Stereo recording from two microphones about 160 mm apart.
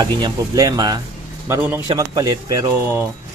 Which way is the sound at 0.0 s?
25° right (ahead or behind).